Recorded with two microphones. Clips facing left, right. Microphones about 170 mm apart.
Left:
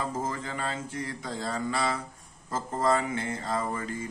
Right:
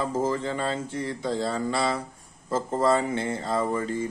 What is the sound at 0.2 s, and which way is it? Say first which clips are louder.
Mantra: right 7 dB; 30° right (ahead or behind).